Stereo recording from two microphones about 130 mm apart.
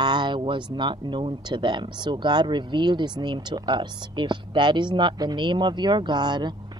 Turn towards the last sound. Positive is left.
turn(degrees=-35)  # may be behind; listen again after turning